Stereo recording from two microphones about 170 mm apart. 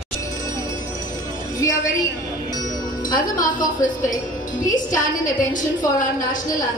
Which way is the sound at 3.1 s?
50° left (ahead or behind).